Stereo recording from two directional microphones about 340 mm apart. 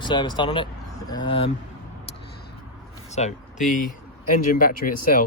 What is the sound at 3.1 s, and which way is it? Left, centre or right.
Speech, left.